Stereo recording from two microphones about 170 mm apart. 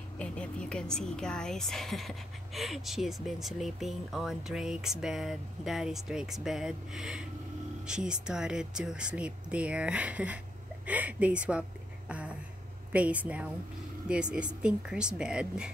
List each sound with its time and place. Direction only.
0.2 s speech: 5° left (ahead or behind)
12.1 s a sound: 5° right (ahead or behind)
12.9 s speech: 10° right (ahead or behind)